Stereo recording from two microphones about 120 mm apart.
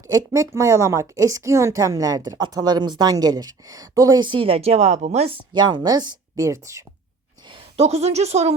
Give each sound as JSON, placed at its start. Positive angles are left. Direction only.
{"t": 0.1, "sound": "a woman's voice", "side_deg": -25}
{"t": 5.5, "sound": "a woman's voice", "side_deg": -40}
{"t": 7.8, "sound": "a woman's voice", "side_deg": -60}